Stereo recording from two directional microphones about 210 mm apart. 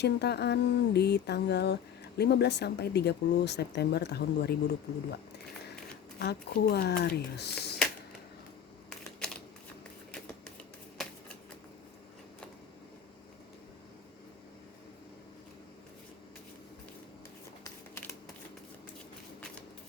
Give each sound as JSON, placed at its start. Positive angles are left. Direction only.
{"t": 0.0, "sound": "speech", "side_deg": 50}
{"t": 6.1, "sound": "speech", "side_deg": 50}
{"t": 11.0, "sound": "shuffling cards", "side_deg": 0}